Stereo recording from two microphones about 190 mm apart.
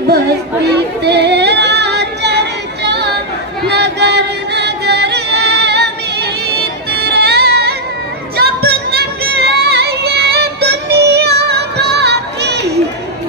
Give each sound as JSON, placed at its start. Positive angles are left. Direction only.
{"t": 1.0, "sound": "female singing", "side_deg": -60}
{"t": 3.6, "sound": "music", "side_deg": -60}